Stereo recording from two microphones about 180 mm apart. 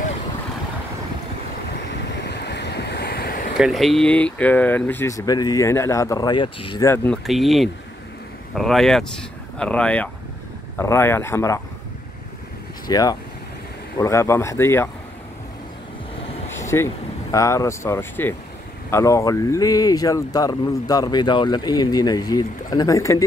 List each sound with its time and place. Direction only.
2.2 s ocean: 65° left (ahead or behind)
3.5 s speech: centre (ahead or behind); by 6.9 s 25° left (ahead or behind)
6.9 s speech: 15° left (ahead or behind)
7.2 s speech: centre (ahead or behind); by 11.6 s 15° left (ahead or behind)
12.8 s speech: 20° left (ahead or behind)
16.5 s speech: 15° left (ahead or behind)